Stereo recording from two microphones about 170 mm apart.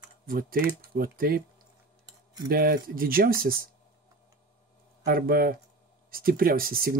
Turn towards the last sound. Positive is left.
turn(degrees=-60)  # may be behind; listen again after turning